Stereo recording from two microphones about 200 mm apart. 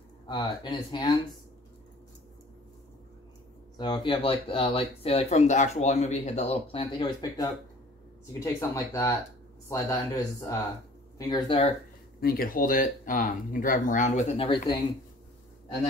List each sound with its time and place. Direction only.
0.3 s speech: 20° left (ahead or behind)
3.7 s speech: 25° left (ahead or behind)
12.2 s speech: 50° left (ahead or behind); by 14.5 s 35° left (ahead or behind)